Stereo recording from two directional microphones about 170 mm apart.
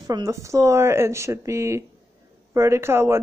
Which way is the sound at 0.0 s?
20° right (ahead or behind).